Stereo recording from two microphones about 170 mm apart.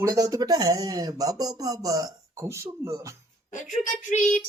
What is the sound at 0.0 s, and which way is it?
Speech, 20° right (ahead or behind).